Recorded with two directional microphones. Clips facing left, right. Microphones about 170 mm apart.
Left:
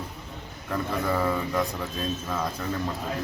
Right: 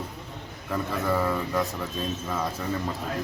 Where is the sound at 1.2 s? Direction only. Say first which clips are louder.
Even; centre (ahead or behind).